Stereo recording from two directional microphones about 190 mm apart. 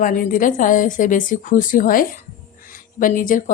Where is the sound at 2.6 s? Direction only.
45° left (ahead or behind).